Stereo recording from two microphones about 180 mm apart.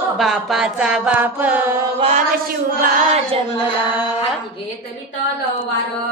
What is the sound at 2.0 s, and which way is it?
Mantra, 40° right (ahead or behind).